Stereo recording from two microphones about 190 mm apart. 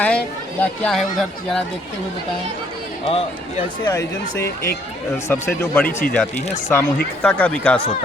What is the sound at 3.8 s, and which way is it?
Speech, 15° left (ahead or behind).